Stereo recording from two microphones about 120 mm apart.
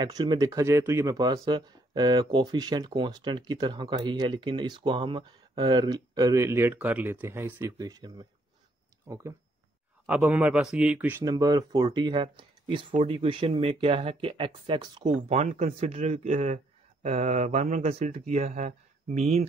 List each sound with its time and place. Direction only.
0.0 s speech: 35° right (ahead or behind)
9.0 s speech: 25° right (ahead or behind)
10.0 s speech: 10° right (ahead or behind)
11.2 s speech: 30° right (ahead or behind)
15.2 s speech: 60° right (ahead or behind)